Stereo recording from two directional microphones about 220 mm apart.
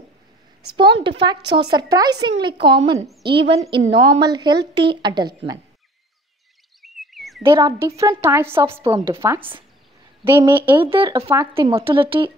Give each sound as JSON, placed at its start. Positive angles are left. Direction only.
{"t": 1.0, "sound": "a woman's voice", "side_deg": -20}
{"t": 6.8, "sound": "chirp tone", "side_deg": 0}
{"t": 7.4, "sound": "a woman's voice", "side_deg": -15}
{"t": 10.8, "sound": "a woman's voice", "side_deg": -25}